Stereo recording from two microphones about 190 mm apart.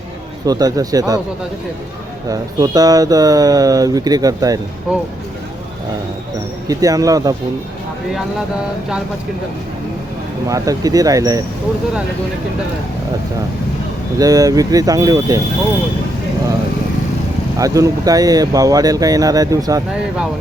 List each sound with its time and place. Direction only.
0.4 s speech: 20° right (ahead or behind)
2.3 s speech: 20° right (ahead or behind)
6.7 s speech: 20° right (ahead or behind)
10.5 s speech: 20° right (ahead or behind)
14.2 s speech: 20° right (ahead or behind)
17.6 s speech: 15° right (ahead or behind)